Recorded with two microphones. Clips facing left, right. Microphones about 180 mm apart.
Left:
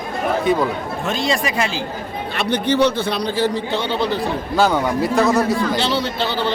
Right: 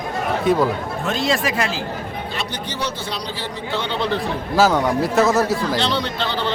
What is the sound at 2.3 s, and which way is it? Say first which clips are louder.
A man's voice: left 14 dB; 60° left (ahead or behind).